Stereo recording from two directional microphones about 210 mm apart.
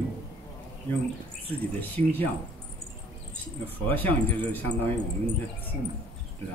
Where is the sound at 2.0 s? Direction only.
10° left (ahead or behind).